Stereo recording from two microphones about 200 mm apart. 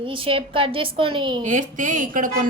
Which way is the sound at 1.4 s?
40° right (ahead or behind).